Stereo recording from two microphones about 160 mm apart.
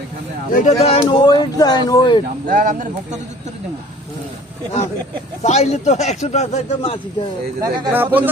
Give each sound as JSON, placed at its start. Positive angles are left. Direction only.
{"t": 0.5, "sound": "a man's voice", "side_deg": 50}
{"t": 1.0, "sound": "speech", "side_deg": 30}
{"t": 2.5, "sound": "speech", "side_deg": -60}
{"t": 5.4, "sound": "a man's voice", "side_deg": 45}
{"t": 7.6, "sound": "speech", "side_deg": -15}